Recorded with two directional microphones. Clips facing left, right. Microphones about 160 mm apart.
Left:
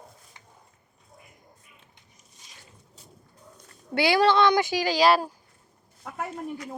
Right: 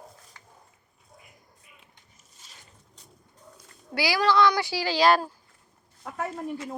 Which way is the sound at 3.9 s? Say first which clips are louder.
Left 3 dB; 25° left (ahead or behind).